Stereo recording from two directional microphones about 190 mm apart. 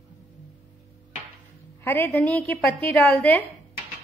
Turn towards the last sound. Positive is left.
turn(degrees=10)  # may be behind; listen again after turning